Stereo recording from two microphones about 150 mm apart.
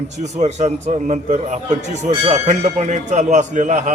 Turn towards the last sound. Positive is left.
turn(degrees=-55)  # may be behind; listen again after turning